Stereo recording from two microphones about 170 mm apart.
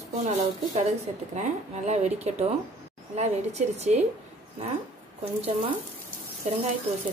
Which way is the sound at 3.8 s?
40° right (ahead or behind).